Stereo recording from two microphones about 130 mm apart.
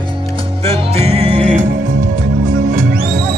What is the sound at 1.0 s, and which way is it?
Music, 60° right (ahead or behind).